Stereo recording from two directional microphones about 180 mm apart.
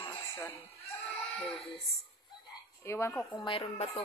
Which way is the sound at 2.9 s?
15° left (ahead or behind).